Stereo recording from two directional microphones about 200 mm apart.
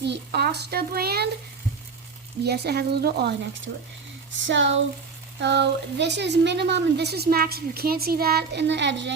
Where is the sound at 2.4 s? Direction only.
55° right (ahead or behind).